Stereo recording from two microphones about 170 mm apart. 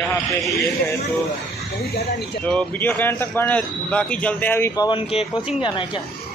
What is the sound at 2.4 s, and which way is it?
Speech, 5° left (ahead or behind).